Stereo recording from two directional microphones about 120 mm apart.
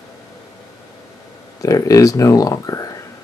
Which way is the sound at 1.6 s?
25° left (ahead or behind).